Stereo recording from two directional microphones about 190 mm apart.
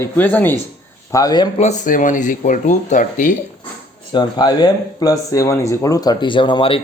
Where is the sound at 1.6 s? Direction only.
40° left (ahead or behind).